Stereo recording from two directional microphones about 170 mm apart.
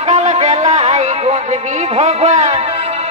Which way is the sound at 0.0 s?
40° right (ahead or behind).